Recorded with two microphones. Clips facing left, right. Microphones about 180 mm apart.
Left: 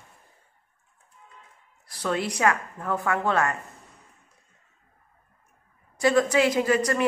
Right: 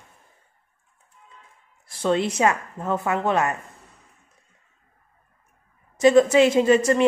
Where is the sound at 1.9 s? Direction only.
25° right (ahead or behind).